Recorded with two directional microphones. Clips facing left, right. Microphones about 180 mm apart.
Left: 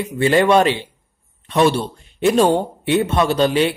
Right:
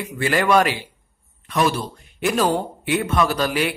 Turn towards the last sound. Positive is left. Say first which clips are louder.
# left 5 dB
turn(degrees=25)  # may be behind; listen again after turning